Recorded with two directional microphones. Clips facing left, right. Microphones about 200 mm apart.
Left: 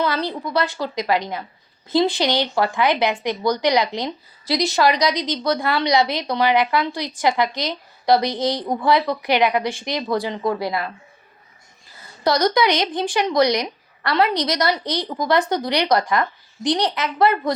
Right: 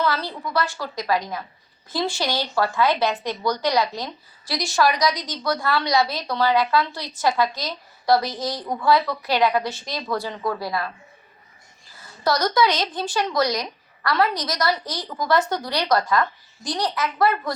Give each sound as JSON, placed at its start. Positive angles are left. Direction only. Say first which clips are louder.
{"t": 0.0, "sound": "a woman's voice", "louder": "left 2 dB", "side_deg": 20}
{"t": 12.2, "sound": "a woman's voice", "louder": "left 2 dB", "side_deg": 20}